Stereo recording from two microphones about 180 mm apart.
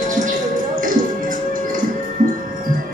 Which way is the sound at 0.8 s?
50° right (ahead or behind).